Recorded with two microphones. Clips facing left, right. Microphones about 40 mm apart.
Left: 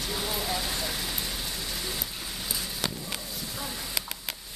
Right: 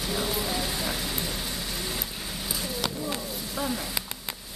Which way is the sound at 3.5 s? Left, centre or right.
Centre.